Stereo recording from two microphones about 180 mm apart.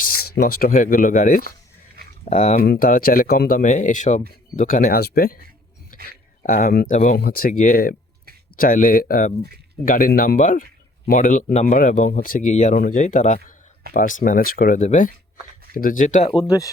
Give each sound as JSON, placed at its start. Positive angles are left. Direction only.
{"t": 0.0, "sound": "speech", "side_deg": 55}
{"t": 2.6, "sound": "speech", "side_deg": 55}
{"t": 16.3, "sound": "speech", "side_deg": 20}